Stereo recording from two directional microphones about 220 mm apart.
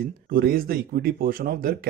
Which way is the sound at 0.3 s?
40° right (ahead or behind).